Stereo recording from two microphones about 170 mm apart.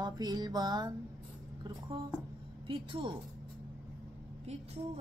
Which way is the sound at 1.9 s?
30° right (ahead or behind).